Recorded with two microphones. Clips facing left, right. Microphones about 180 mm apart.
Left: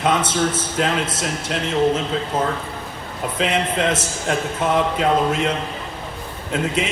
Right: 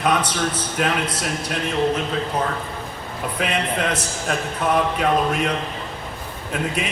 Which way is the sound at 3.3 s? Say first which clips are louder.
Left 3 dB; 25° left (ahead or behind).